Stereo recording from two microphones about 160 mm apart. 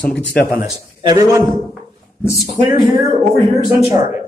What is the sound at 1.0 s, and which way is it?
Speech, 20° right (ahead or behind).